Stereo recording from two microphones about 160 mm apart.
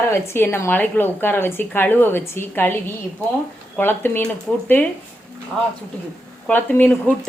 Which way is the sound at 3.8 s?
15° left (ahead or behind).